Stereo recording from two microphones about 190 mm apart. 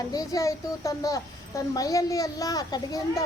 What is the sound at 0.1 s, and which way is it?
A child's voice, 20° left (ahead or behind).